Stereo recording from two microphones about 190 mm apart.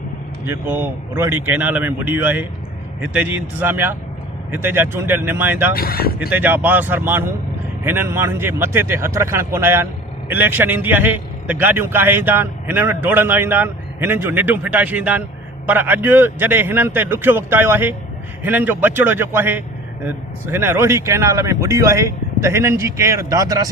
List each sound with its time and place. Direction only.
0.4 s speech: 10° right (ahead or behind)
5.7 s speech: 55° left (ahead or behind)
6.1 s speech: 10° right (ahead or behind)